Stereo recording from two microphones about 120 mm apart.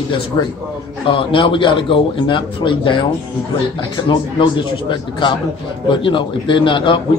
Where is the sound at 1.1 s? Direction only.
45° left (ahead or behind).